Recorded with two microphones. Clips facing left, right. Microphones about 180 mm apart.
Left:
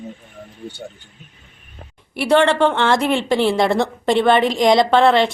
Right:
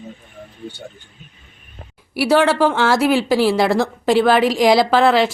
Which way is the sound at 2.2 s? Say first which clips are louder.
Even; 5° right (ahead or behind).